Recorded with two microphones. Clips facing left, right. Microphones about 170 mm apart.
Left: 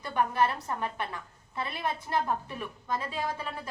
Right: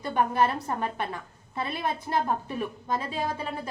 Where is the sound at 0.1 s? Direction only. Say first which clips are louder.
Right 3 dB; 30° right (ahead or behind).